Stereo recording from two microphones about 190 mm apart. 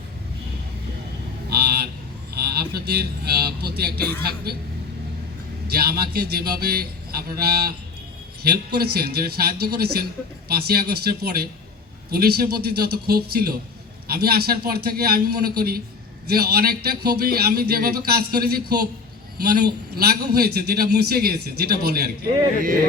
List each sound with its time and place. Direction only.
1.5 s honk: 55° right (ahead or behind)
2.3 s a man's voice: 55° right (ahead or behind)
5.6 s a man's voice: 55° right (ahead or behind)